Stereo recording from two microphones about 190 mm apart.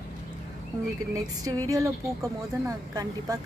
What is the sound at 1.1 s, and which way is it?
Speech, 20° right (ahead or behind).